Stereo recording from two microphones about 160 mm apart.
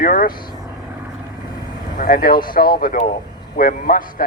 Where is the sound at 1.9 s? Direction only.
60° left (ahead or behind).